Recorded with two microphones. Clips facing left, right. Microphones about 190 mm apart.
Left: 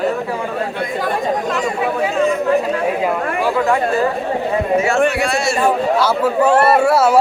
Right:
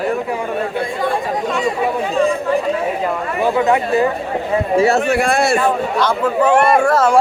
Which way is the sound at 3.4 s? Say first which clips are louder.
Right 2 dB; 20° right (ahead or behind).